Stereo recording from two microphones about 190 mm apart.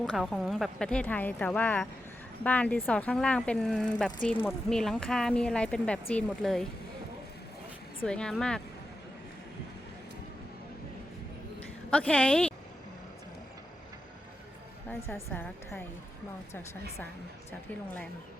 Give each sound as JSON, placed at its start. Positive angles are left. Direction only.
{"t": 0.0, "sound": "speech", "side_deg": 0}
{"t": 8.0, "sound": "speech", "side_deg": 5}
{"t": 11.9, "sound": "a woman's voice", "side_deg": 5}
{"t": 14.8, "sound": "a woman's voice", "side_deg": 10}